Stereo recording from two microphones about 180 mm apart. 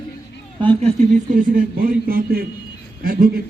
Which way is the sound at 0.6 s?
30° right (ahead or behind).